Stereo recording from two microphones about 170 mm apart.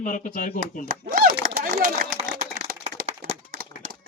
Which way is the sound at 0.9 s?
55° right (ahead or behind).